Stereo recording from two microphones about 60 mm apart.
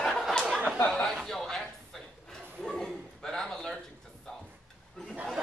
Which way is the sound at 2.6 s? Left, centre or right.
Centre.